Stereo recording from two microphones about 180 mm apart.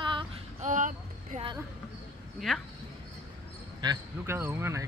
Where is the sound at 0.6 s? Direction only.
45° right (ahead or behind).